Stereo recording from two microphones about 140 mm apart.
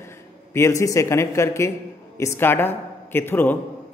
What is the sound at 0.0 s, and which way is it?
A man's voice, 20° left (ahead or behind).